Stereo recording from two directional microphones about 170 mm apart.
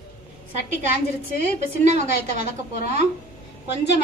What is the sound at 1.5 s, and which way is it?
Speech, 45° right (ahead or behind).